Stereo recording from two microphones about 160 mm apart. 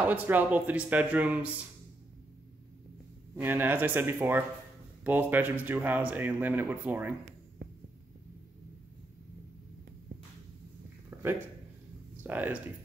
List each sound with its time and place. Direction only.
0.0 s speech: 10° right (ahead or behind)
3.3 s speech: 10° right (ahead or behind)
12.2 s speech: 10° right (ahead or behind)